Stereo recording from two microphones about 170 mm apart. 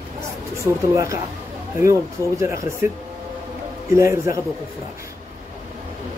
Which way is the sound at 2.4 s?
15° right (ahead or behind).